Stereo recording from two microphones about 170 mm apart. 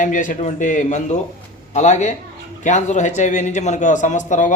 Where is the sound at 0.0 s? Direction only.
50° left (ahead or behind).